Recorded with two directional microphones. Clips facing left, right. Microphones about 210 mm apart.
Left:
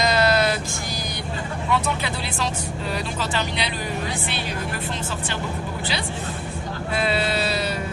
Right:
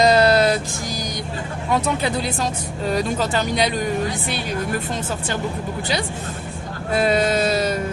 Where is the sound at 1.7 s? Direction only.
40° right (ahead or behind).